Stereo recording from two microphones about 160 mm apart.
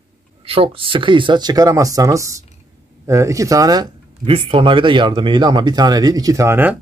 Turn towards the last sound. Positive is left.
turn(degrees=-15)  # may be behind; listen again after turning